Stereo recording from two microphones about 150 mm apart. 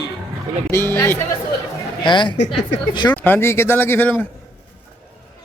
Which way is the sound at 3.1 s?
15° left (ahead or behind).